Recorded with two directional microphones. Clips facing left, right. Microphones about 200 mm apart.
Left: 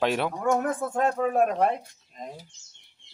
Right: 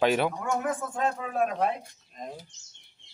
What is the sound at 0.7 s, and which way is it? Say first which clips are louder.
Speech: left 3 dB; 50° left (ahead or behind).